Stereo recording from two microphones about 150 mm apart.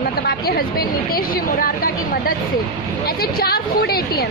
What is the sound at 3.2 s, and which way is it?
A woman's voice, 90° left.